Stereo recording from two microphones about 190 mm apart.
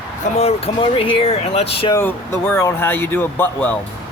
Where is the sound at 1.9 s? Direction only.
15° left (ahead or behind).